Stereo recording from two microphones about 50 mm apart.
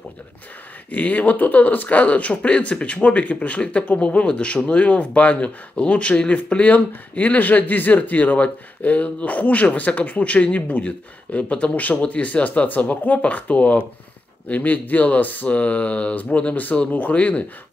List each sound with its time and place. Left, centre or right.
0.9 s speech: left